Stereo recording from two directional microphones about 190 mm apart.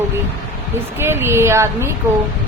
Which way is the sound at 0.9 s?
10° right (ahead or behind).